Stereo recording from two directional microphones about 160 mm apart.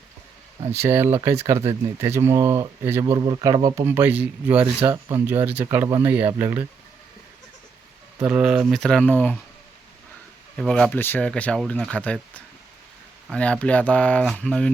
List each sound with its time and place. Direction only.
0.7 s speech: 15° right (ahead or behind)
3.8 s speech: 10° right (ahead or behind)
8.3 s speech: 5° right (ahead or behind); by 9.4 s 10° left (ahead or behind)
10.6 s speech: 5° left (ahead or behind)